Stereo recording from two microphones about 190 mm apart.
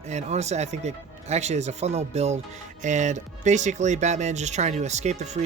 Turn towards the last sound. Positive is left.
turn(degrees=-35)  # may be behind; listen again after turning